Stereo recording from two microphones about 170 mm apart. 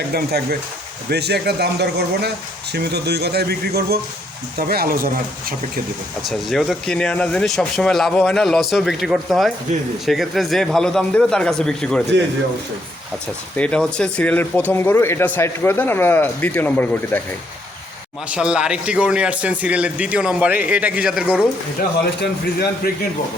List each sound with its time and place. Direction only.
0.1 s speech: 65° right (ahead or behind)
6.2 s speech: centre (ahead or behind)
13.6 s speech: 5° left (ahead or behind)
18.3 s a man's voice: 5° right (ahead or behind)
22.2 s a man's voice: 70° left (ahead or behind)